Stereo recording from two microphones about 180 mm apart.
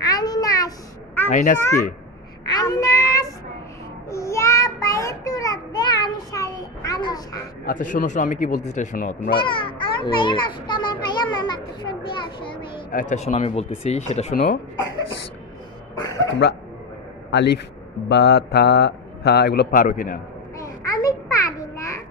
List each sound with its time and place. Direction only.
0.0 s a sound: 20° left (ahead or behind)
1.3 s speech: 45° left (ahead or behind)
2.4 s child singing: 20° left (ahead or behind)
7.6 s speech: 45° left (ahead or behind)
9.4 s a child's voice: 25° left (ahead or behind)
12.9 s speech: 40° left (ahead or behind)
14.3 s speech: 50° left (ahead or behind)
16.3 s a man's voice: 70° left (ahead or behind); by 20.2 s 50° left (ahead or behind)
20.6 s a sound: 20° left (ahead or behind)